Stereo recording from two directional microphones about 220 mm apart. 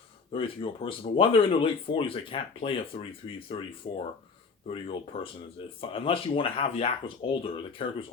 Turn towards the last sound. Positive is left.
turn(degrees=25)  # may be behind; listen again after turning